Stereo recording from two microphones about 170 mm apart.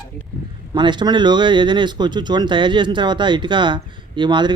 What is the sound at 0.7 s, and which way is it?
Speech, 25° right (ahead or behind).